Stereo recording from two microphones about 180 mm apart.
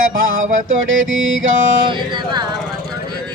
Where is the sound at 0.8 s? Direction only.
90° right.